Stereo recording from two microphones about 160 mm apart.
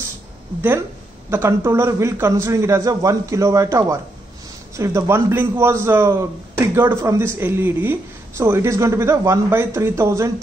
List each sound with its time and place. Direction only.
0.6 s speech: 10° right (ahead or behind)